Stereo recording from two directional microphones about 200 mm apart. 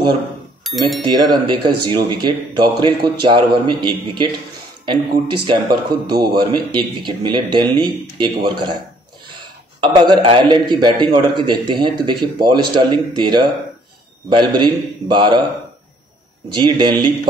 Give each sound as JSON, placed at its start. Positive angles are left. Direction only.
{"t": 0.7, "sound": "speech", "side_deg": 0}
{"t": 1.0, "sound": "a man's voice", "side_deg": -20}
{"t": 16.5, "sound": "a man's voice", "side_deg": -20}